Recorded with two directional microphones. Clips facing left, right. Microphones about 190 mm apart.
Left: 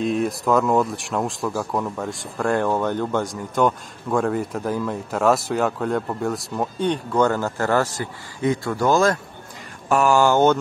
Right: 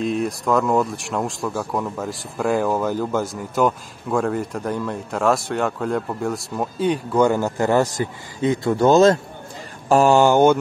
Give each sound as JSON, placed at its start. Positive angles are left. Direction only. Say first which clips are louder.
{"t": 0.0, "sound": "speech", "louder": "even", "side_deg": 0}